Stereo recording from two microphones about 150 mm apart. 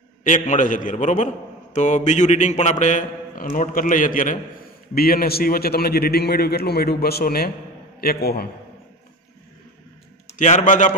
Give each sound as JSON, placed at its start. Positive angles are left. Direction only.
{"t": 0.2, "sound": "a man's voice", "side_deg": 60}
{"t": 4.9, "sound": "a man's voice", "side_deg": 80}
{"t": 10.3, "sound": "a man's voice", "side_deg": 55}